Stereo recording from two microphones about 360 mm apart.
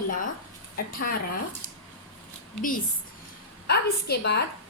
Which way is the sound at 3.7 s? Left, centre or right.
Left.